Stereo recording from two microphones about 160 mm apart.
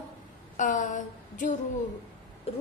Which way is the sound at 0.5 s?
55° left (ahead or behind).